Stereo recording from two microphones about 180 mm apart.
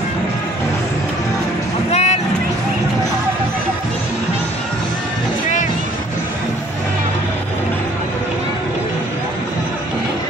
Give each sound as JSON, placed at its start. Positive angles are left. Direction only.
{"t": 1.9, "sound": "music", "side_deg": 40}